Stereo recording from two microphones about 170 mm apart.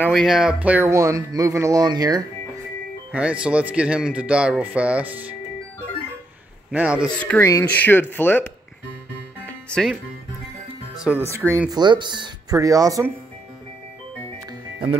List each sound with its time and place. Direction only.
0.0 s speech: centre (ahead or behind); by 2.2 s 25° right (ahead or behind)
3.1 s speech: 5° right (ahead or behind)
6.7 s a man's voice: 5° right (ahead or behind)
7.2 s speech: 10° left (ahead or behind)
7.4 s speech: 20° left (ahead or behind)
9.5 s music: 5° left (ahead or behind)
11.3 s speech: 15° right (ahead or behind)
11.7 s speech: 25° right (ahead or behind)